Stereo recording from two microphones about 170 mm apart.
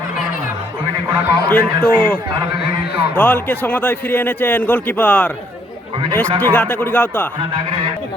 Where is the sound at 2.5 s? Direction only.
75° left (ahead or behind).